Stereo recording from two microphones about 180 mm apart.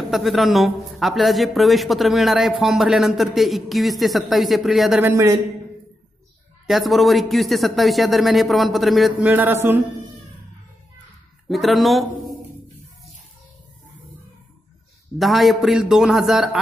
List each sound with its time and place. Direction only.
0.1 s a man's voice: centre (ahead or behind)
5.1 s speech: 15° right (ahead or behind)
6.7 s a man's voice: centre (ahead or behind)
9.3 s speech: 10° right (ahead or behind)
11.4 s a man's voice: centre (ahead or behind)
15.1 s a man's voice: centre (ahead or behind)